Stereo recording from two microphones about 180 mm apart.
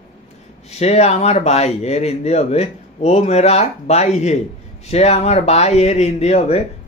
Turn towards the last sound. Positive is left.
turn(degrees=35)  # may be behind; listen again after turning